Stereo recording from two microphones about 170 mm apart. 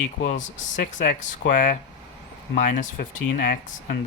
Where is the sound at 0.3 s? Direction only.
45° left (ahead or behind).